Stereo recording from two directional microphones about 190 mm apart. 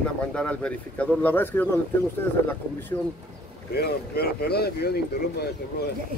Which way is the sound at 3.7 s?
55° left (ahead or behind).